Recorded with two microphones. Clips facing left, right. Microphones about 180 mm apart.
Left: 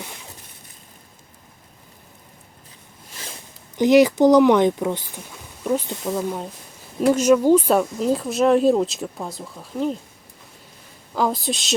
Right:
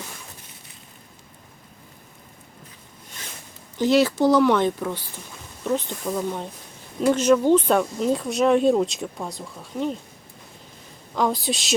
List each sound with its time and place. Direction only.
3.8 s speech: 15° left (ahead or behind)
11.1 s speech: centre (ahead or behind)